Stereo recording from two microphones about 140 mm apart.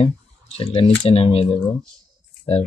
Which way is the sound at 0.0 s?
45° left (ahead or behind).